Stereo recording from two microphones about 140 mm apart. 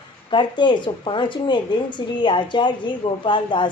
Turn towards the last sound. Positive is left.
turn(degrees=35)  # may be behind; listen again after turning